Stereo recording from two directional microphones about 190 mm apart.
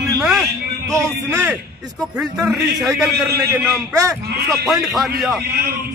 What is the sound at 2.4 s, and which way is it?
Speech, centre (ahead or behind).